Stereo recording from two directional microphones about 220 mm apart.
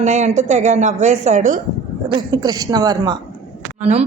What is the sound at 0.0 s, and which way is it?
A woman's voice, 30° right (ahead or behind).